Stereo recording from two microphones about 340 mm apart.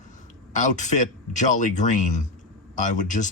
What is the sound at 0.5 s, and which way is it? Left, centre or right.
Speech, left.